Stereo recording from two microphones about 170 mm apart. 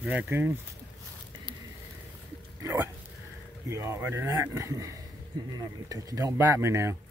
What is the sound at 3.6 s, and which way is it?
Speech, 15° right (ahead or behind).